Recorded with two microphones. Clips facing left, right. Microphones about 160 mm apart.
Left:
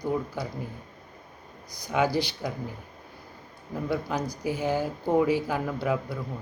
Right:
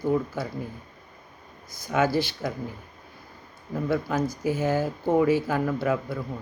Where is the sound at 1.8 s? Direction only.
15° left (ahead or behind).